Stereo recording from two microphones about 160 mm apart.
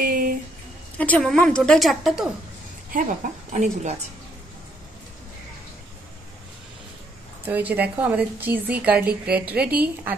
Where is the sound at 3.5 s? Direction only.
45° right (ahead or behind).